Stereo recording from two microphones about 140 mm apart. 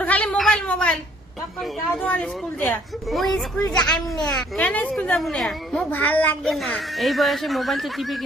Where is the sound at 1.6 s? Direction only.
Centre (ahead or behind).